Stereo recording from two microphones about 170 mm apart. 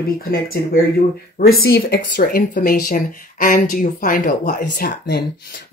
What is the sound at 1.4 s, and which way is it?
Speech, 65° left (ahead or behind).